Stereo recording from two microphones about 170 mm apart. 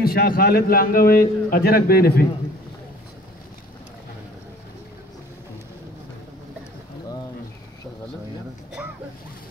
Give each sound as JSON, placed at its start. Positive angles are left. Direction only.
{"t": 0.0, "sound": "a man's voice", "side_deg": 60}